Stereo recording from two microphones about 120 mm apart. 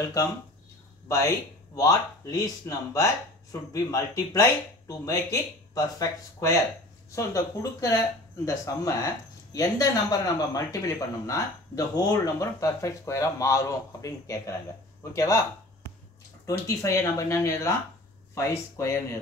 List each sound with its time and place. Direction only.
1.0 s speech: 25° left (ahead or behind)
16.4 s speech: 25° left (ahead or behind)